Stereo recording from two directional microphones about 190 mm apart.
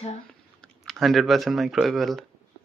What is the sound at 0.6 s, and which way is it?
Speech, centre (ahead or behind).